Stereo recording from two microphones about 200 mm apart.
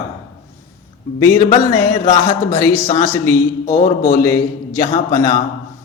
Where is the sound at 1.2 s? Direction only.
20° left (ahead or behind).